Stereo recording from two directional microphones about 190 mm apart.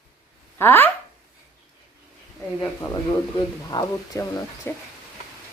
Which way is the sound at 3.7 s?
20° left (ahead or behind).